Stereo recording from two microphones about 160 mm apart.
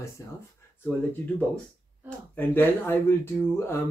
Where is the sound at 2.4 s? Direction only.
15° left (ahead or behind).